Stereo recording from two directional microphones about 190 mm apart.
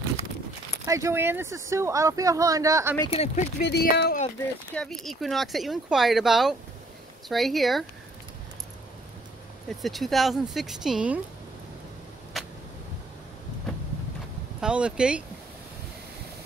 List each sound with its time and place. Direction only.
0.8 s speech: 15° right (ahead or behind)
3.1 s speech: 35° left (ahead or behind)
3.6 s speech: 60° left (ahead or behind)
4.7 s speech: centre (ahead or behind)
9.7 s speech: centre (ahead or behind)
12.4 s a sound: centre (ahead or behind)
14.6 s speech: 5° right (ahead or behind)